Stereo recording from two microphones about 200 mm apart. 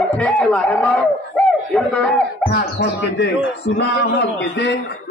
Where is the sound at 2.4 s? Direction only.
55° left (ahead or behind).